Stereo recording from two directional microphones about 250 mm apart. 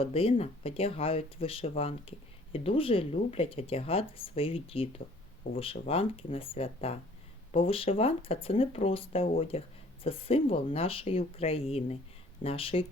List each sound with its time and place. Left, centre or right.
0.0 s speech: left